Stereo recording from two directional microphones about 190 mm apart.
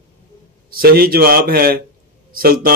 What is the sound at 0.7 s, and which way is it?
Speech, 50° right (ahead or behind).